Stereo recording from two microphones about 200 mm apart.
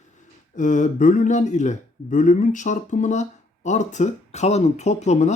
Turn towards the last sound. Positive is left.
turn(degrees=35)  # may be behind; listen again after turning